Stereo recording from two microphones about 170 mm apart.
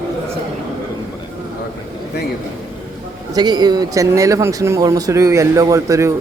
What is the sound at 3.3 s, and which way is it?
Speech, 25° right (ahead or behind).